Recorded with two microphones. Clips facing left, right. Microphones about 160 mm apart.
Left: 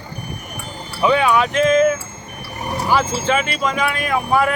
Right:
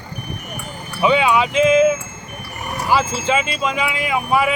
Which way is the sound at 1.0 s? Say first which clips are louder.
Even; 10° right (ahead or behind).